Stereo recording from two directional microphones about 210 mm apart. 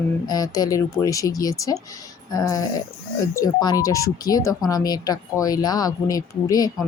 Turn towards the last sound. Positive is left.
turn(degrees=15)  # may be behind; listen again after turning